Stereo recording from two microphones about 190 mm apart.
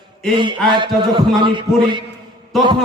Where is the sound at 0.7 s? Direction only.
25° right (ahead or behind).